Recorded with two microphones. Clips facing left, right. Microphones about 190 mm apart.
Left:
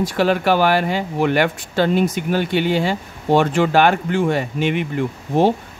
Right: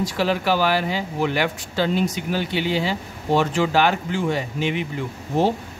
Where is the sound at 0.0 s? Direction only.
55° left (ahead or behind).